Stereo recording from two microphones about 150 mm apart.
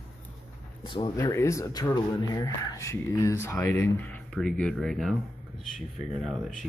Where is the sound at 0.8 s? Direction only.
35° left (ahead or behind).